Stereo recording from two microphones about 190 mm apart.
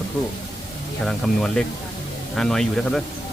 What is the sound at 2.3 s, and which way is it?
Speech, 5° left (ahead or behind).